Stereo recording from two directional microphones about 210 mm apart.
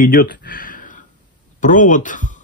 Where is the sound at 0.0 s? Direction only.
40° left (ahead or behind).